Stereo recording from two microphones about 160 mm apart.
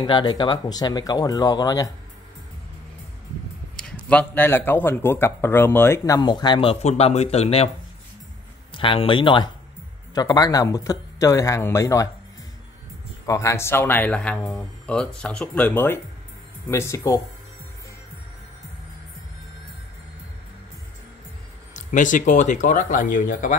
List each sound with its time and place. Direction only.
0.0 s speech: 25° left (ahead or behind)
4.1 s speech: 10° left (ahead or behind); by 7.7 s 40° left (ahead or behind)
8.7 s speech: 35° left (ahead or behind)
13.3 s speech: 20° left (ahead or behind)
21.7 s speech: 55° left (ahead or behind)